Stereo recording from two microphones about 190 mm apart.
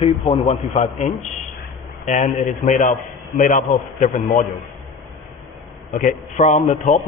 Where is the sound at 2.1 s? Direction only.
40° left (ahead or behind).